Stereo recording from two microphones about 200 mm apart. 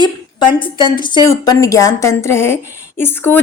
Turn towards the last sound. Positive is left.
turn(degrees=10)  # may be behind; listen again after turning